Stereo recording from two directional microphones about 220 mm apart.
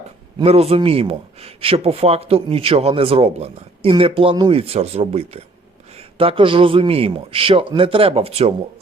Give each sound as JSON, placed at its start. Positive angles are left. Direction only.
{"t": 0.3, "sound": "speech", "side_deg": -25}